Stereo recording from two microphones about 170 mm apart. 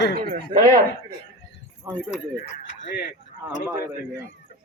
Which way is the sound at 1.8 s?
10° right (ahead or behind).